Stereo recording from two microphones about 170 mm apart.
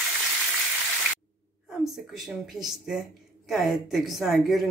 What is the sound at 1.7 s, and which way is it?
Speech, centre (ahead or behind).